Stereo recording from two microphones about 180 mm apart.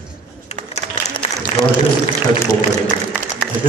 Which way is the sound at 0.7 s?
40° left (ahead or behind).